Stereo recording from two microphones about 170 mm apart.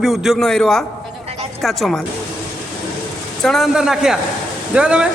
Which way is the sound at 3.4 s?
Centre (ahead or behind).